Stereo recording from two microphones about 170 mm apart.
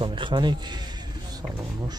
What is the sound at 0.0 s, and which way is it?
Speech, 30° right (ahead or behind).